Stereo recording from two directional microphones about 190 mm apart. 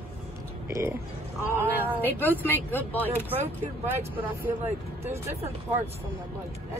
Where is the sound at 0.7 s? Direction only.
15° right (ahead or behind).